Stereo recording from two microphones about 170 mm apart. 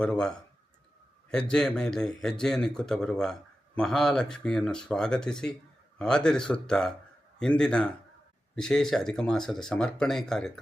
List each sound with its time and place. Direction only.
0.0 s speech: 5° left (ahead or behind)